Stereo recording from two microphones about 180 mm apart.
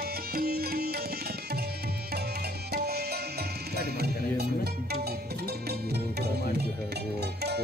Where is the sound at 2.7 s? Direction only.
60° right (ahead or behind).